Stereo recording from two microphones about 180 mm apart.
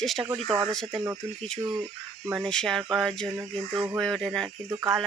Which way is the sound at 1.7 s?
10° right (ahead or behind).